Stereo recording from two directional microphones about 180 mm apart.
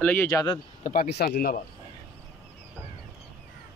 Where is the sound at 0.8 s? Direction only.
55° left (ahead or behind).